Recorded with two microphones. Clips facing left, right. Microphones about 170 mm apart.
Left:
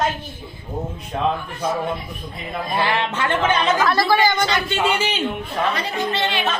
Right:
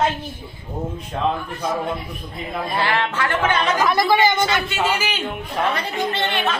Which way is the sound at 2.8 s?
20° left (ahead or behind).